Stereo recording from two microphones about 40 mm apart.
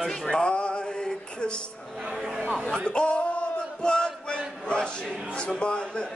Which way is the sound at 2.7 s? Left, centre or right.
Left.